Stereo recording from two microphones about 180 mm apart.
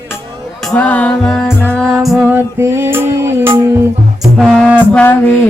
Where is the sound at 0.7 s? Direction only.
10° left (ahead or behind).